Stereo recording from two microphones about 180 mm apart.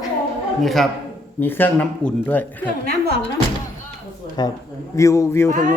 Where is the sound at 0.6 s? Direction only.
Centre (ahead or behind).